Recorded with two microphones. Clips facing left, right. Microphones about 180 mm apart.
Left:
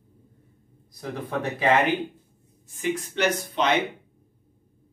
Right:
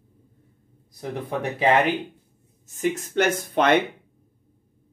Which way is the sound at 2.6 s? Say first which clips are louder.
Right 2 dB; 45° right (ahead or behind).